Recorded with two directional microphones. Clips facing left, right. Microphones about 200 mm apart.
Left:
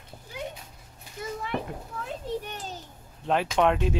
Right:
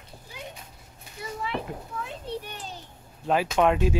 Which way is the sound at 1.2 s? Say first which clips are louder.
Left 1 dB; 50° left (ahead or behind).